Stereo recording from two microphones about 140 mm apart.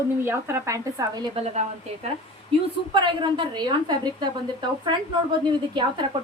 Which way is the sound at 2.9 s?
35° right (ahead or behind).